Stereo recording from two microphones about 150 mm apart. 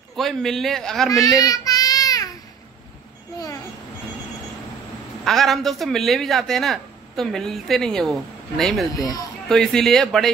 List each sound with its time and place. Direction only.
0.1 s speech: centre (ahead or behind)
1.4 s child singing: 25° left (ahead or behind)
5.2 s speech: centre (ahead or behind)
8.9 s speech: 25° left (ahead or behind)
9.5 s speech: 5° left (ahead or behind)